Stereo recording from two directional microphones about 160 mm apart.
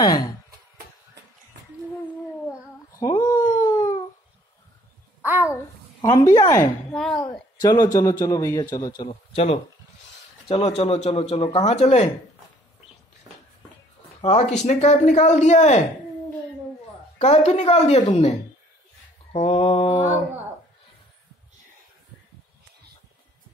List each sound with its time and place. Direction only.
0.0 s a man's voice: 25° left (ahead or behind)
2.9 s a sound: 20° left (ahead or behind)
3.6 s howl: 20° left (ahead or behind)
5.2 s babbling: 10° right (ahead or behind)
6.0 s a man's voice: 20° left (ahead or behind)
6.9 s speech: centre (ahead or behind)
7.6 s a man's voice: 25° left (ahead or behind)
9.1 s speech: 40° left (ahead or behind)
14.2 s speech: 45° left (ahead or behind)
17.2 s speech: 40° left (ahead or behind)
19.3 s speech: 40° left (ahead or behind)